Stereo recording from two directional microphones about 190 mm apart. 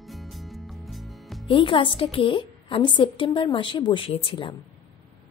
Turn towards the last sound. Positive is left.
turn(degrees=25)  # may be behind; listen again after turning